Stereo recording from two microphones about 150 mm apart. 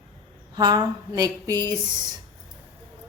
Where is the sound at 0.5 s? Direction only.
30° right (ahead or behind).